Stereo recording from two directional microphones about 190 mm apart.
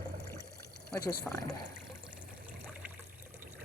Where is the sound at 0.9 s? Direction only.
15° left (ahead or behind).